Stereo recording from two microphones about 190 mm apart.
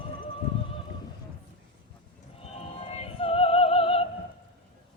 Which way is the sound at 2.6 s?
30° left (ahead or behind).